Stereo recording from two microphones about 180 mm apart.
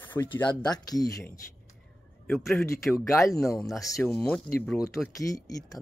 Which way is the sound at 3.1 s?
15° left (ahead or behind).